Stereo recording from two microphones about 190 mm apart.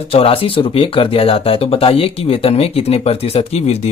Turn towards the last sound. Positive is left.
turn(degrees=35)  # may be behind; listen again after turning